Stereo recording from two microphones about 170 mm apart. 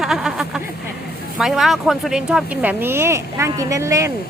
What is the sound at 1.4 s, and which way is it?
Speech, centre (ahead or behind).